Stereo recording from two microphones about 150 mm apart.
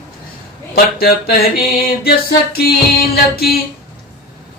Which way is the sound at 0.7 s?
90° left.